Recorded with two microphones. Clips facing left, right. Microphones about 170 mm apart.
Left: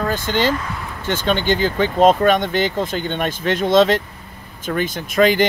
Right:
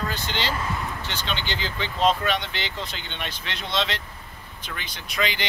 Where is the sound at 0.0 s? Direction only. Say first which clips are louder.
Left 10 dB; 45° left (ahead or behind).